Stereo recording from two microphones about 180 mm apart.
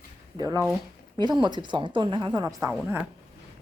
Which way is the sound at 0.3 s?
20° right (ahead or behind).